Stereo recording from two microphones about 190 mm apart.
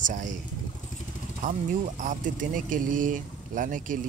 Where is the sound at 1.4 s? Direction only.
40° right (ahead or behind).